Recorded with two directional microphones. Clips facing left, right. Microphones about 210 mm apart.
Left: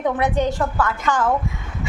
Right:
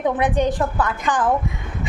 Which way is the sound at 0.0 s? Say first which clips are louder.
Right 1 dB; 15° right (ahead or behind).